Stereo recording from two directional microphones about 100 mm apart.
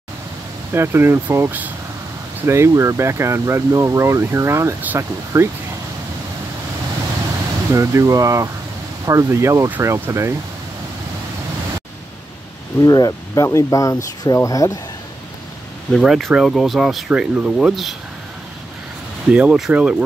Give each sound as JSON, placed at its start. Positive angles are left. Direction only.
{"t": 0.7, "sound": "speech", "side_deg": -25}
{"t": 7.7, "sound": "speech", "side_deg": -30}
{"t": 12.8, "sound": "speech", "side_deg": 40}
{"t": 15.9, "sound": "speech", "side_deg": 0}
{"t": 17.1, "sound": "speech", "side_deg": -10}
{"t": 19.3, "sound": "speech", "side_deg": -10}